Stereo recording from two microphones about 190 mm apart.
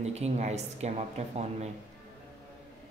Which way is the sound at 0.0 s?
35° right (ahead or behind).